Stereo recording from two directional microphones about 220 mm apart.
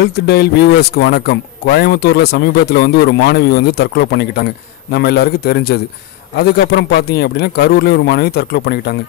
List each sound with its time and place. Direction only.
0.0 s speech: 45° left (ahead or behind)